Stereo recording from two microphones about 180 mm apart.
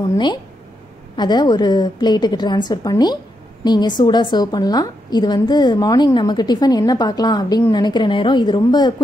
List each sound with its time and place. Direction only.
0.1 s a woman's voice: 25° left (ahead or behind)